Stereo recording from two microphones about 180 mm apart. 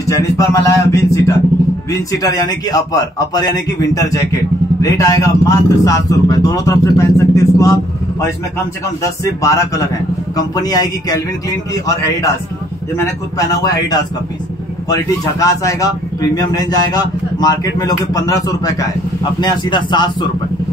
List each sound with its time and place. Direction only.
0.0 s a man's voice: 15° left (ahead or behind)
9.0 s a man's voice: 15° left (ahead or behind)
13.6 s a man's voice: 20° left (ahead or behind)